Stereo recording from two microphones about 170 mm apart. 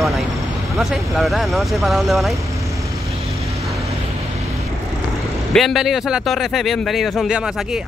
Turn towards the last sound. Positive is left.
turn(degrees=-5)  # may be behind; listen again after turning